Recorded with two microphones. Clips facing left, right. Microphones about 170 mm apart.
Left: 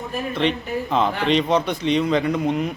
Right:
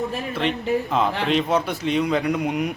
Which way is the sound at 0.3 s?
5° right (ahead or behind).